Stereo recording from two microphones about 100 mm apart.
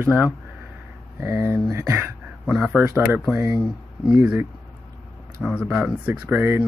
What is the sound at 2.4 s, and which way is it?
Speech, 10° right (ahead or behind).